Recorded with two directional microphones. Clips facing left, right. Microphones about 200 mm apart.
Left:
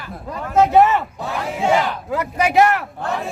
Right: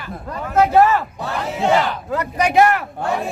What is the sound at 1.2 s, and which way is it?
Battle cry, centre (ahead or behind).